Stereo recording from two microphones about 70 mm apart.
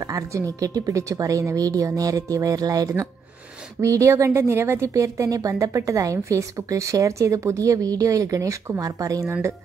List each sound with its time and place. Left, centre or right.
0.1 s a woman's voice: right